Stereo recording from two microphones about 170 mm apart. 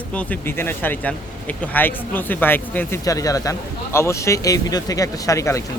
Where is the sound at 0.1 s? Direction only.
10° left (ahead or behind).